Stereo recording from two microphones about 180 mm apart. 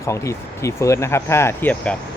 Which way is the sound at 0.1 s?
15° left (ahead or behind).